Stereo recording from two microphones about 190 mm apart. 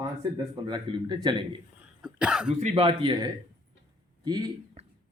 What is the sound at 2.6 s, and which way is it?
Speech, 30° right (ahead or behind).